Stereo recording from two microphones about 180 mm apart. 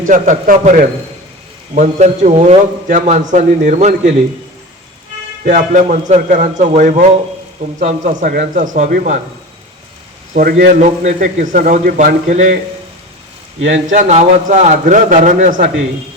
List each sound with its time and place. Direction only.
0.1 s a man's voice: 45° right (ahead or behind)
5.5 s a man's voice: 45° right (ahead or behind)
10.3 s a man's voice: 50° right (ahead or behind)
13.7 s a man's voice: 40° right (ahead or behind)